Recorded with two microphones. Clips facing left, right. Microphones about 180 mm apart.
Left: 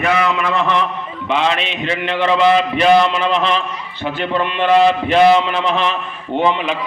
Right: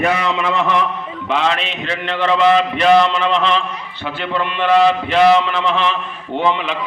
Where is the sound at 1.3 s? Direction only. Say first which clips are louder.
Left 1 dB; centre (ahead or behind).